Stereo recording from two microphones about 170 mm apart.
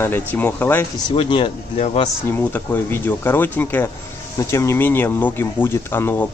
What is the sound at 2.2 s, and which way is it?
A man's voice, 10° left (ahead or behind).